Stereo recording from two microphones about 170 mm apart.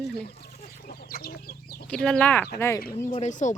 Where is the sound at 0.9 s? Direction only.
60° left (ahead or behind).